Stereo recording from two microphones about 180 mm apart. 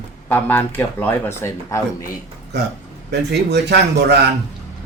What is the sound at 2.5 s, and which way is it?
Speech, 70° right (ahead or behind).